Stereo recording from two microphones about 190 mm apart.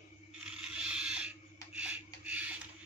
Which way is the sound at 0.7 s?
5° right (ahead or behind).